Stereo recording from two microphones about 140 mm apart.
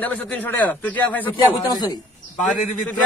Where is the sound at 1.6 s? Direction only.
30° left (ahead or behind).